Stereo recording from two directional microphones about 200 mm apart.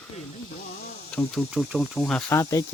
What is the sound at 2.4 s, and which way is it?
Speech, 15° left (ahead or behind).